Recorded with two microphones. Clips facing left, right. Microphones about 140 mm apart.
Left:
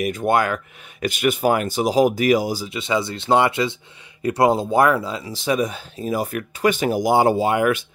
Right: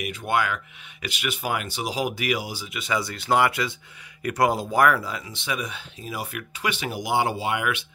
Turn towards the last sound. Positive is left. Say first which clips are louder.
# left 8 dB
turn(degrees=40)  # may be behind; listen again after turning